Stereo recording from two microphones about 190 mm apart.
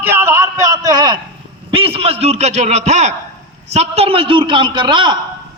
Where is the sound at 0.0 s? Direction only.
10° right (ahead or behind).